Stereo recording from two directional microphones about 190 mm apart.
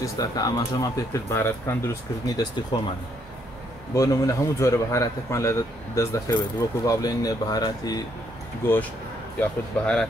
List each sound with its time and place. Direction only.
0.0 s a man's voice: 20° left (ahead or behind)
3.9 s a man's voice: 15° left (ahead or behind)
9.4 s speech: 5° left (ahead or behind)